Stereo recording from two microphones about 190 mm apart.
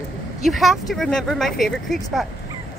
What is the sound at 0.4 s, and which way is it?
Speech, centre (ahead or behind).